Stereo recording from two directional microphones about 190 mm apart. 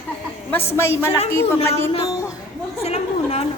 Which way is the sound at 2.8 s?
30° left (ahead or behind).